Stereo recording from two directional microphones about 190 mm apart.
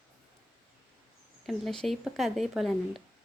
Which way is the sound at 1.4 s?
Centre (ahead or behind).